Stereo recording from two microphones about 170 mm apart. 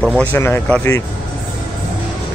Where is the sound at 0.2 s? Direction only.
10° left (ahead or behind).